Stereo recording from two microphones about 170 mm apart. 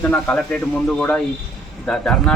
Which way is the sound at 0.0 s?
10° left (ahead or behind).